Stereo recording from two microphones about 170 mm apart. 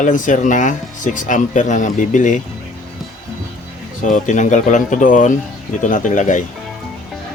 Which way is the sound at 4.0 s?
50° left (ahead or behind).